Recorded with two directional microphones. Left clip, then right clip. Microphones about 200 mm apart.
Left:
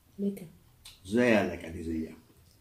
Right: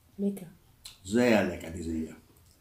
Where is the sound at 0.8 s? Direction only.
15° right (ahead or behind).